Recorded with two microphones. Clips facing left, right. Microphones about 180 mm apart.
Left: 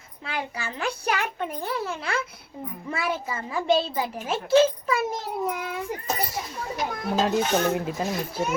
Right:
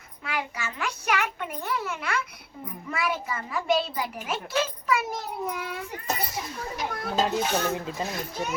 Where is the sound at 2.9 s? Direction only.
30° left (ahead or behind).